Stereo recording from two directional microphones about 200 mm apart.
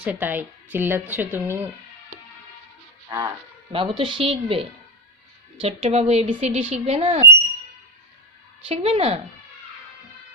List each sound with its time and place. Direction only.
0.0 s speech: 10° right (ahead or behind)
3.1 s a woman's voice: 15° right (ahead or behind)
8.6 s speech: 30° right (ahead or behind)